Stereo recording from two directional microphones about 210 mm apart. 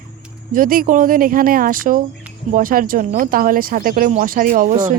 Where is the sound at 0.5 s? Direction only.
40° right (ahead or behind).